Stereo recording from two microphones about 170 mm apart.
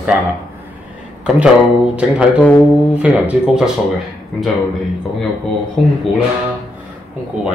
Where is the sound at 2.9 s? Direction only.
5° right (ahead or behind).